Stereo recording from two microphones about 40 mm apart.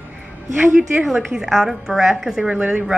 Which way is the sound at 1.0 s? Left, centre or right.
Centre.